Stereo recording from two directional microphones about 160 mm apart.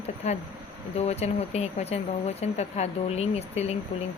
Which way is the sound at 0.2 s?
45° left (ahead or behind).